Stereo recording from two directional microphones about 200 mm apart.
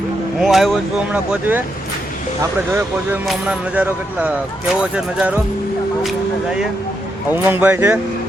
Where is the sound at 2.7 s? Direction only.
10° right (ahead or behind).